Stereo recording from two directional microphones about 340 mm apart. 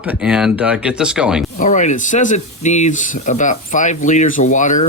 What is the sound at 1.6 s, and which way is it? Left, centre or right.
Speech, left.